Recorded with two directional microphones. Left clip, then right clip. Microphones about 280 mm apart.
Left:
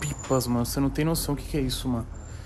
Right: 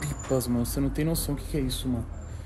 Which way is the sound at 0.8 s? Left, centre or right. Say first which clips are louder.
Left 3 dB; left.